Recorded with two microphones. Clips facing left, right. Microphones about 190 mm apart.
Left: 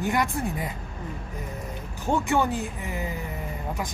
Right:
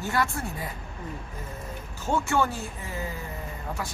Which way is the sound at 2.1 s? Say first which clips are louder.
Left 2 dB; 15° left (ahead or behind).